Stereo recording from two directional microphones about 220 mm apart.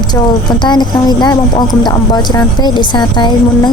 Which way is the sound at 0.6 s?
20° left (ahead or behind).